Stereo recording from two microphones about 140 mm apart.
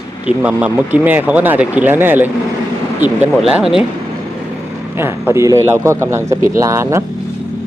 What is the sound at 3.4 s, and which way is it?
Speech, 5° right (ahead or behind).